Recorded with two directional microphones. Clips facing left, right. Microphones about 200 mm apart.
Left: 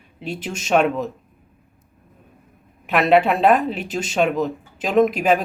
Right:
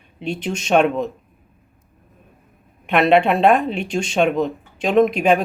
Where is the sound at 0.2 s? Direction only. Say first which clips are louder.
Right 4 dB; 5° left (ahead or behind).